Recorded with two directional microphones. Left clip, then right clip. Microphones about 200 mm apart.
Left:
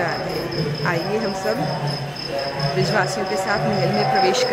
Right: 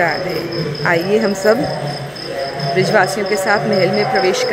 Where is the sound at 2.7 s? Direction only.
15° right (ahead or behind).